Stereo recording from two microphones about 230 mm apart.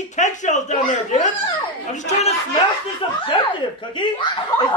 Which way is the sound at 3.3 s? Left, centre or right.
Left.